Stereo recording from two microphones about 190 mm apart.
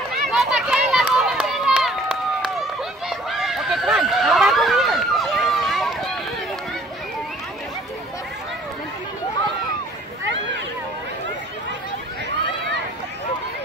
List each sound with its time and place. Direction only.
0.3 s run: 5° right (ahead or behind)
3.1 s run: centre (ahead or behind)